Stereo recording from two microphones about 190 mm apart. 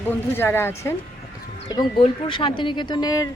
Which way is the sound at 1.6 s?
25° left (ahead or behind).